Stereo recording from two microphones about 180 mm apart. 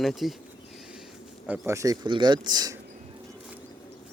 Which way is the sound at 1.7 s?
20° right (ahead or behind).